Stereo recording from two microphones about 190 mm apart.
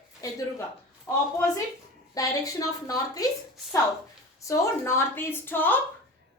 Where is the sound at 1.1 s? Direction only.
10° left (ahead or behind).